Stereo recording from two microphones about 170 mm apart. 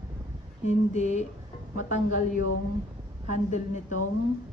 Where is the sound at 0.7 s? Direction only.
40° left (ahead or behind).